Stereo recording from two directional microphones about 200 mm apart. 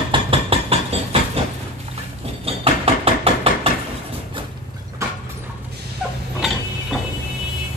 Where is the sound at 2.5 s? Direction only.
30° right (ahead or behind).